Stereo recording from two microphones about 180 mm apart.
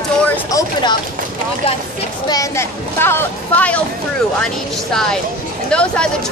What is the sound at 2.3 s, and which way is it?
Speech, 15° left (ahead or behind).